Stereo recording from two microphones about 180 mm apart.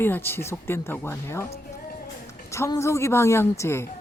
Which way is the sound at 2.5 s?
15° left (ahead or behind).